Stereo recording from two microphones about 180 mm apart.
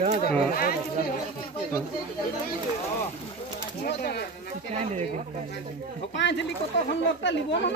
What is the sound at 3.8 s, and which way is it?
Speech, 65° left (ahead or behind).